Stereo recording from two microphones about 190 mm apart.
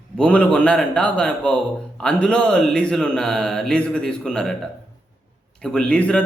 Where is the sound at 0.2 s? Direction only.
5° left (ahead or behind).